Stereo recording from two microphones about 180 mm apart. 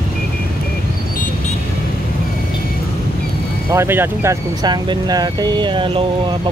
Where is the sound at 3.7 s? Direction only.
15° right (ahead or behind).